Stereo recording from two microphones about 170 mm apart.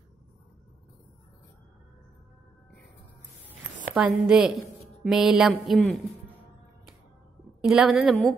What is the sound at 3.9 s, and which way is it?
A woman's voice, 5° right (ahead or behind).